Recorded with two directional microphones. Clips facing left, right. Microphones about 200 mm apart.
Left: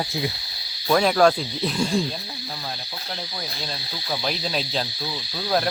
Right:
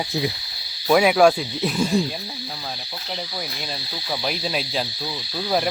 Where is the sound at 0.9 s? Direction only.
10° right (ahead or behind).